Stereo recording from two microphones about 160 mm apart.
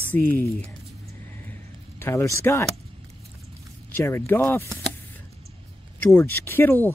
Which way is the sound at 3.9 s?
15° left (ahead or behind).